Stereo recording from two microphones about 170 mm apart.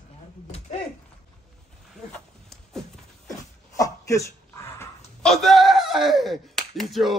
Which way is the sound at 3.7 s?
20° left (ahead or behind).